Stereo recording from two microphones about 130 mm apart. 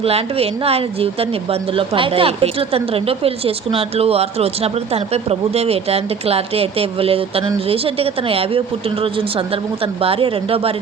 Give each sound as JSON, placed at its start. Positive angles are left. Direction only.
{"t": 0.0, "sound": "a woman's voice", "side_deg": -50}